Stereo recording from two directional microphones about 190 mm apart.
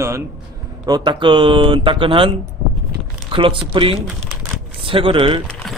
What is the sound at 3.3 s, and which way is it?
Speech, 25° right (ahead or behind).